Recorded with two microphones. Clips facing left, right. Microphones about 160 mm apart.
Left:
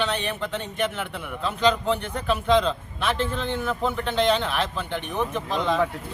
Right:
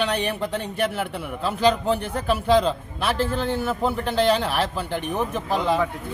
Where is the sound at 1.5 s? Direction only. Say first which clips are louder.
Right 2 dB; 5° right (ahead or behind).